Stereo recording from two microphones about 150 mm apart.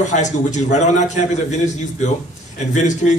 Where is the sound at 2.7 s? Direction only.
55° left (ahead or behind).